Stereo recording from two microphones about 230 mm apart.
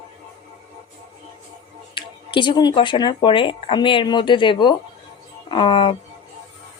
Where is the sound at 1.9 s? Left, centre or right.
Left.